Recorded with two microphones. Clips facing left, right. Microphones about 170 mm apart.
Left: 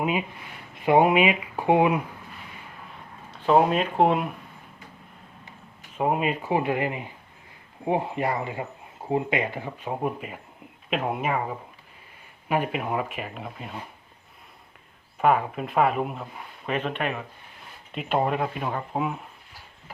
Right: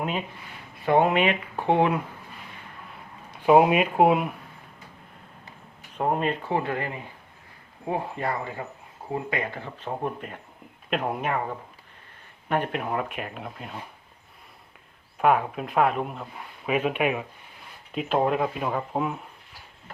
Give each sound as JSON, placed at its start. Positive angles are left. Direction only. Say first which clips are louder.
{"t": 0.0, "sound": "speech", "louder": "left 3 dB", "side_deg": 10}
{"t": 3.3, "sound": "speech", "louder": "right 2 dB", "side_deg": -15}
{"t": 6.0, "sound": "speech", "louder": "left 1 dB", "side_deg": 5}
{"t": 15.2, "sound": "speech", "louder": "even", "side_deg": 0}
{"t": 17.9, "sound": "speech", "louder": "right 1 dB", "side_deg": 0}